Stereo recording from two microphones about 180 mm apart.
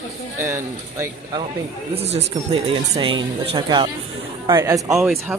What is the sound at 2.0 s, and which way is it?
Speech, 35° right (ahead or behind).